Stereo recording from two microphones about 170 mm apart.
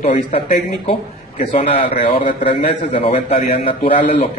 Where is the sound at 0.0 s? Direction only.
40° left (ahead or behind).